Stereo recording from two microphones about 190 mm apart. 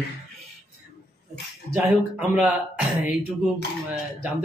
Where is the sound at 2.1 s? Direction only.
5° right (ahead or behind).